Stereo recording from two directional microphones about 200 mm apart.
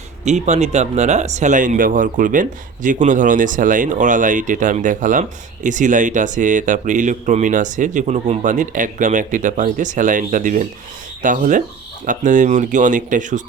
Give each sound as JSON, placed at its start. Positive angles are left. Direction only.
{"t": 0.3, "sound": "speech", "side_deg": -35}